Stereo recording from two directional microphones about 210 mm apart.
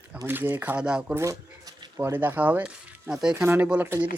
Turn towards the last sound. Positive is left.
turn(degrees=-10)  # may be behind; listen again after turning